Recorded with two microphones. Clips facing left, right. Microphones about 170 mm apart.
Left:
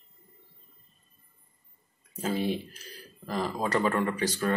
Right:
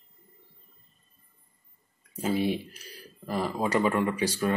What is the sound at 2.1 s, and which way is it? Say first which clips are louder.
Speech: right 2 dB; 10° right (ahead or behind).